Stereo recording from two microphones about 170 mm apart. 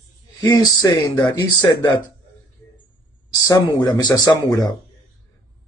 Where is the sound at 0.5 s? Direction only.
25° left (ahead or behind).